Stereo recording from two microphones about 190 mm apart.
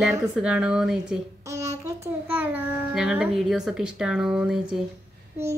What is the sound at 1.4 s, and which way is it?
Child singing, 15° right (ahead or behind).